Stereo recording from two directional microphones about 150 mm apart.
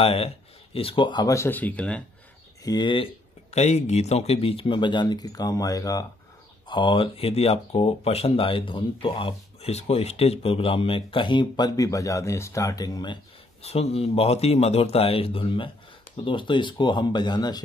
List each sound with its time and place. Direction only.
0.0 s speech: 40° left (ahead or behind); by 2.0 s 10° left (ahead or behind)
2.6 s speech: 30° left (ahead or behind)
3.5 s speech: 50° left (ahead or behind); by 6.0 s 25° left (ahead or behind)
6.7 s speech: 35° left (ahead or behind)